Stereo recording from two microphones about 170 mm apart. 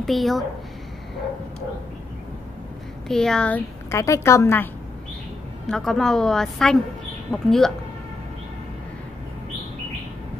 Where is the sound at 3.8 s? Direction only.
20° left (ahead or behind).